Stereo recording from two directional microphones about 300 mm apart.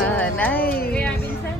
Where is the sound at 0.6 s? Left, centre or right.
Left.